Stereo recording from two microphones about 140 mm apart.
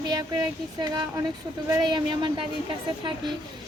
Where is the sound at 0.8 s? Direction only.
30° right (ahead or behind).